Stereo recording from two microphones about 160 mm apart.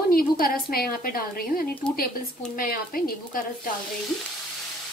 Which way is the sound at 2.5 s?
65° left (ahead or behind).